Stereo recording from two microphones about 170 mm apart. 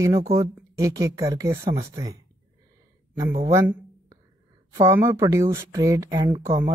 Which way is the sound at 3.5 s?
20° right (ahead or behind).